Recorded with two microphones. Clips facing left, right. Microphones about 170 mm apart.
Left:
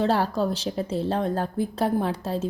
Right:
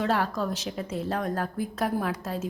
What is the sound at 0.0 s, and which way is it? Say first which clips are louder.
A woman's voice: left 4 dB; 30° left (ahead or behind).